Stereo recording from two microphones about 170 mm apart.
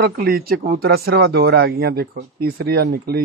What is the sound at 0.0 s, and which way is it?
Speech, 65° right (ahead or behind).